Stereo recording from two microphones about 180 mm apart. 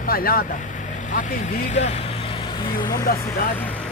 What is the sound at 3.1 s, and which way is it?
Speech, 55° left (ahead or behind).